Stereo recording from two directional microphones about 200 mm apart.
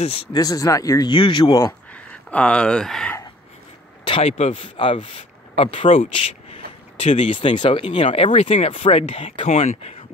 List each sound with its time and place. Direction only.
0.0 s speech: 30° left (ahead or behind)
2.0 s speech: 5° left (ahead or behind)
4.0 s speech: 30° left (ahead or behind)